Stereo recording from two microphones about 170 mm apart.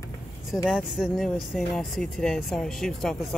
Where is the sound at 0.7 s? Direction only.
Centre (ahead or behind).